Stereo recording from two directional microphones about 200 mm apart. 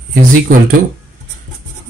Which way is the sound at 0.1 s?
45° right (ahead or behind).